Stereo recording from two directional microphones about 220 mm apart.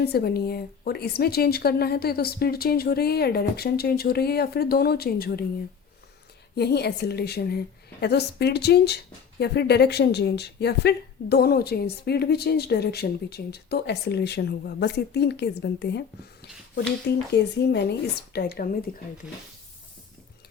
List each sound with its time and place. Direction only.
0.0 s a woman's voice: 45° left (ahead or behind)
6.6 s a woman's voice: 50° left (ahead or behind)